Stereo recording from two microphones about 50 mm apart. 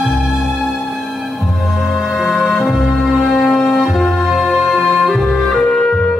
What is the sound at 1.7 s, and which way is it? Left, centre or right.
Music, centre.